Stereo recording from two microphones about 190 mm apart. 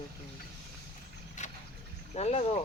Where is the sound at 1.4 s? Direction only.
40° left (ahead or behind).